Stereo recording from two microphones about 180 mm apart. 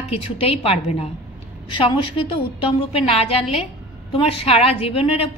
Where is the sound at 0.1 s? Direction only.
30° left (ahead or behind).